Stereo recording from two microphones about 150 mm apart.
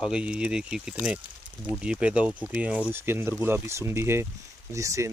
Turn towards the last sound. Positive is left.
turn(degrees=-20)  # may be behind; listen again after turning